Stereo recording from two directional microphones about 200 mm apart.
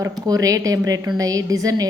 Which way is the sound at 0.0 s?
15° right (ahead or behind).